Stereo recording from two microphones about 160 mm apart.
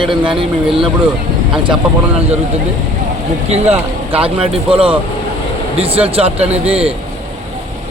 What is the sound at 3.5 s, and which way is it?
Speech, 40° right (ahead or behind).